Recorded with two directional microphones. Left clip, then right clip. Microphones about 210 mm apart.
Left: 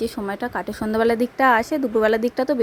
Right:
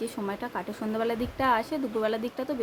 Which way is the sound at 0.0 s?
30° left (ahead or behind).